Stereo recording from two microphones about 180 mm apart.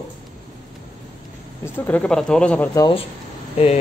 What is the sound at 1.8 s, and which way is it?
Speech, 10° left (ahead or behind).